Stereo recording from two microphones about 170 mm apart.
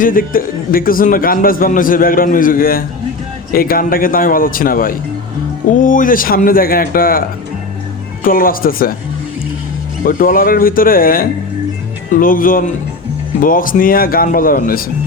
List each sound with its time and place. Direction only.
0.0 s a man's voice: 55° left (ahead or behind)
10.1 s a man's voice: 55° left (ahead or behind)